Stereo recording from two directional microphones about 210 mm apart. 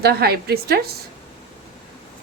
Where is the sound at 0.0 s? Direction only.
50° right (ahead or behind).